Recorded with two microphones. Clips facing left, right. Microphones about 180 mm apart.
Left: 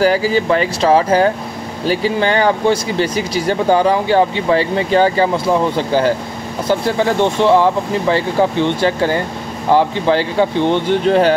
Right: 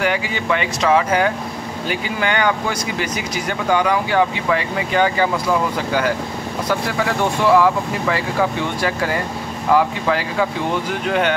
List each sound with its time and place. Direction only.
0.0 s speech: 35° left (ahead or behind)